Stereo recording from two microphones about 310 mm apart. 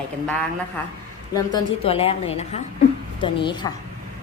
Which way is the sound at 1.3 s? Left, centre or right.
Centre.